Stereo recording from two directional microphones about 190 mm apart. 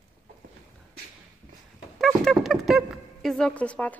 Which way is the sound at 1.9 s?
Centre (ahead or behind).